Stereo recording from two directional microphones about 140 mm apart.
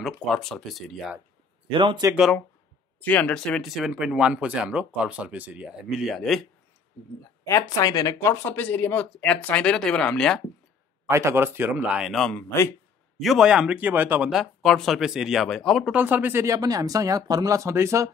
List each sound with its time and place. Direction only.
0.0 s speech: centre (ahead or behind)
1.7 s speech: 35° right (ahead or behind)
3.0 s speech: 10° left (ahead or behind)
7.4 s speech: 25° left (ahead or behind); by 10.4 s 5° left (ahead or behind)
11.1 s speech: 20° right (ahead or behind)
12.2 s speech: 5° left (ahead or behind)
15.9 s speech: 15° right (ahead or behind)